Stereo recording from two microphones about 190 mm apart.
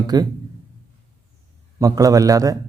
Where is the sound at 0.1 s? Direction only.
20° right (ahead or behind).